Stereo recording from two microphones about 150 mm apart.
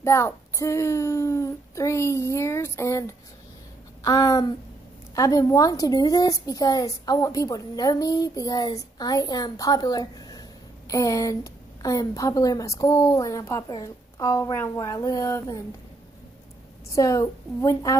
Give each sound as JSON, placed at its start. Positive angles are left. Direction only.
{"t": 0.0, "sound": "a woman's voice", "side_deg": 20}
{"t": 16.9, "sound": "a woman's voice", "side_deg": 20}